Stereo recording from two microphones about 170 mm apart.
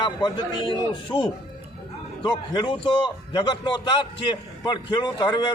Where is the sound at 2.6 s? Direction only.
30° left (ahead or behind).